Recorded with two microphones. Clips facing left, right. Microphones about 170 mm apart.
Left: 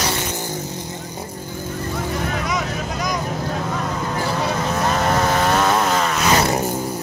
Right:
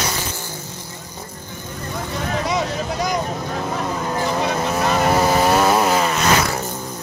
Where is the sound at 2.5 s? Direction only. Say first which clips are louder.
Right 2 dB; 30° right (ahead or behind).